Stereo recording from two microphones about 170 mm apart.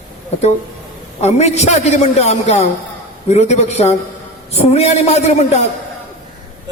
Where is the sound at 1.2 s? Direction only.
40° left (ahead or behind).